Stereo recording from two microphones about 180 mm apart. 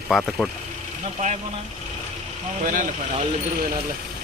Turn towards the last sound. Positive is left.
turn(degrees=-45)  # may be behind; listen again after turning